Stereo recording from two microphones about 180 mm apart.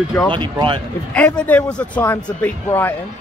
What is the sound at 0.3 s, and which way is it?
Speech, 25° right (ahead or behind).